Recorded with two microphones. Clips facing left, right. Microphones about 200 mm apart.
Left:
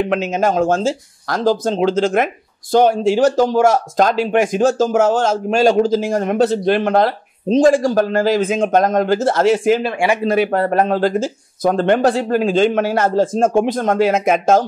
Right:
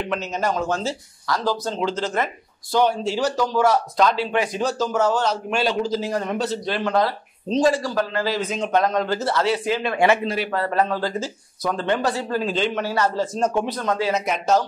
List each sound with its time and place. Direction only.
0.5 s speech: 50° left (ahead or behind)
1.7 s speech: 90° left
2.7 s speech: 50° left (ahead or behind)